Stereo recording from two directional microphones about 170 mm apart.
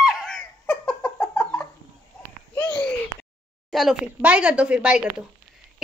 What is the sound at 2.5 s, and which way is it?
Babbling, 10° left (ahead or behind).